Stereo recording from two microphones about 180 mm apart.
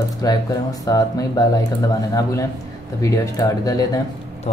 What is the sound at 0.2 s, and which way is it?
Speech, 20° left (ahead or behind).